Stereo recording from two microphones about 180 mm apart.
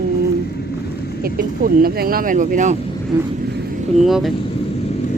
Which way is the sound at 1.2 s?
55° right (ahead or behind).